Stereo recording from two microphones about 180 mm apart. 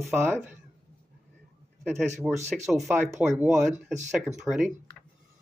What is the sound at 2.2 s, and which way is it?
Speech, 5° right (ahead or behind).